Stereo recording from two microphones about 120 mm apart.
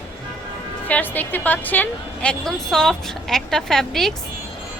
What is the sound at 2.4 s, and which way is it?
A woman's voice, 5° left (ahead or behind).